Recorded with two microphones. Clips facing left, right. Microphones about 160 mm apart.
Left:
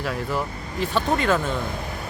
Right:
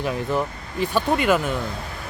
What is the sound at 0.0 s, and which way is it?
Speech, 20° right (ahead or behind).